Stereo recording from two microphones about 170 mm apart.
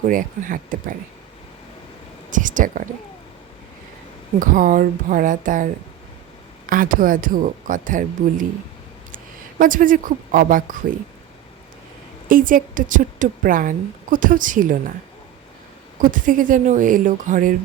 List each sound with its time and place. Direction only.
0.1 s a woman's voice: 50° right (ahead or behind)
2.3 s speech: 50° right (ahead or behind)
4.4 s a woman's voice: 50° right (ahead or behind)
6.7 s a woman's voice: 55° right (ahead or behind)
12.3 s a woman's voice: 55° right (ahead or behind)
16.0 s a woman's voice: 50° right (ahead or behind)